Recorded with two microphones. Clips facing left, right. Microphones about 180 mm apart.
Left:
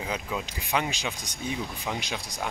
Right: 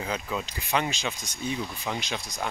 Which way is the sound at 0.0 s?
10° left (ahead or behind).